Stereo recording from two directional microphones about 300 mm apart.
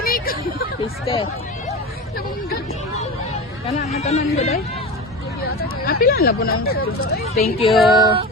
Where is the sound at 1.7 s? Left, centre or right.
Left.